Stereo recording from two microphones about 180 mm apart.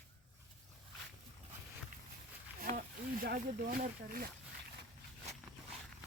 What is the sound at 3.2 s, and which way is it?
Speech, 55° right (ahead or behind).